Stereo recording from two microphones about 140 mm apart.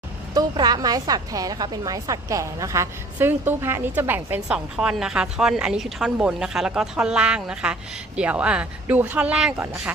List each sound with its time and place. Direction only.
0.3 s a woman's voice: 30° right (ahead or behind); by 9.9 s 10° right (ahead or behind)